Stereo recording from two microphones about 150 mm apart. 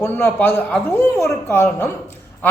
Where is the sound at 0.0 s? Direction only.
15° left (ahead or behind).